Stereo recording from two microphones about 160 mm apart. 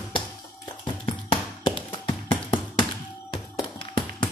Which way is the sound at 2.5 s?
30° left (ahead or behind).